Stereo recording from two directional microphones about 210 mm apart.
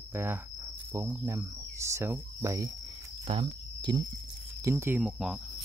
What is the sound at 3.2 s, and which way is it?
Cricket, 25° right (ahead or behind).